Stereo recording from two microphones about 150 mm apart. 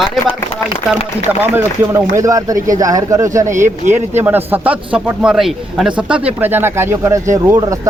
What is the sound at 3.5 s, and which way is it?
Speech, 55° right (ahead or behind).